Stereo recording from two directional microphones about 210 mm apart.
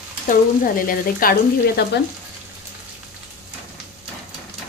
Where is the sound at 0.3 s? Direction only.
40° left (ahead or behind).